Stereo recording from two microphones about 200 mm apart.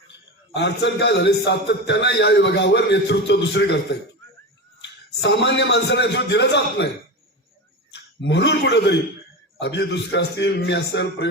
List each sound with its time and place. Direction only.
0.5 s a man's voice: 60° left (ahead or behind)
7.9 s a man's voice: 60° left (ahead or behind)